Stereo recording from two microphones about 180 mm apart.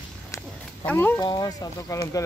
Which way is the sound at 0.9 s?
10° left (ahead or behind).